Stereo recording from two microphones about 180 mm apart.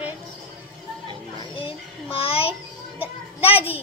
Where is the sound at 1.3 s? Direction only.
30° left (ahead or behind).